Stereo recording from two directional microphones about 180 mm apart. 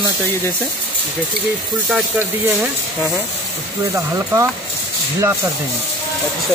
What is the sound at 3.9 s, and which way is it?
Speech, 15° right (ahead or behind).